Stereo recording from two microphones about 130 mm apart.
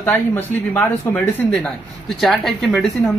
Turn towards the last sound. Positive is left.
turn(degrees=0)  # may be behind; listen again after turning